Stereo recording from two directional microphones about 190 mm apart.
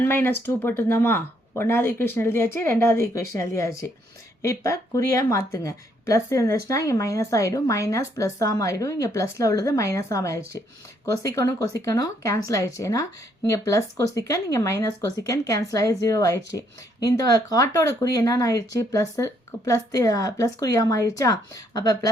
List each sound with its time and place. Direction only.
0.0 s speech: 10° left (ahead or behind)